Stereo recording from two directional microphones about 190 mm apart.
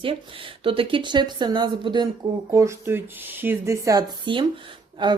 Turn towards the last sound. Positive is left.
turn(degrees=-25)  # may be behind; listen again after turning